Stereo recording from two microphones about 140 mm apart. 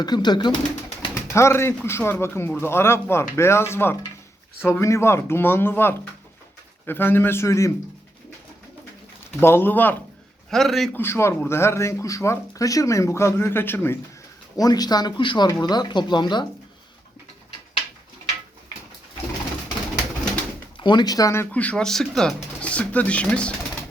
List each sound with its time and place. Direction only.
0.0 s speech: 30° left (ahead or behind)
1.1 s speech: 20° left (ahead or behind)
9.4 s speech: 15° left (ahead or behind)
10.5 s speech: centre (ahead or behind)
10.9 s speech: 20° left (ahead or behind)
14.5 s speech: 25° left (ahead or behind)
20.7 s speech: 35° left (ahead or behind)
21.5 s speech: 10° left (ahead or behind)